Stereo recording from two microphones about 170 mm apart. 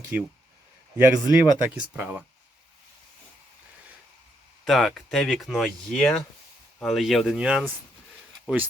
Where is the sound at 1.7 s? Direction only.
10° right (ahead or behind).